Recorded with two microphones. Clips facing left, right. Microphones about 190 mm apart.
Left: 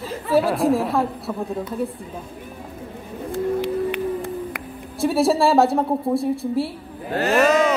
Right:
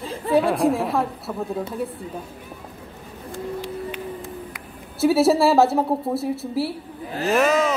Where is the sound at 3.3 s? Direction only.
65° left (ahead or behind).